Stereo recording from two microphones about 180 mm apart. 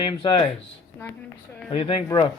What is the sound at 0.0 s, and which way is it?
Speech, 25° left (ahead or behind).